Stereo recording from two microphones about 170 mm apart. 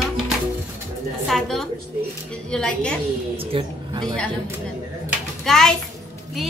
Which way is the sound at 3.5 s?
30° right (ahead or behind).